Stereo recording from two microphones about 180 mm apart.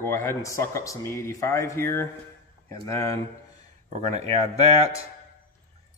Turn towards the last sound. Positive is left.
turn(degrees=-35)  # may be behind; listen again after turning